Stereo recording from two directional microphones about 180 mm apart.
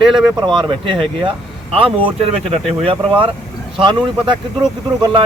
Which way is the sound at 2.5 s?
30° right (ahead or behind).